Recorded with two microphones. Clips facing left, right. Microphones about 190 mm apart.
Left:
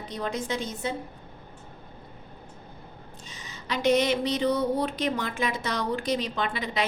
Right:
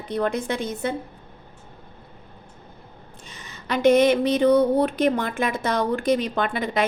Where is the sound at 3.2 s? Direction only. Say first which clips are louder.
Right 5 dB; 55° right (ahead or behind).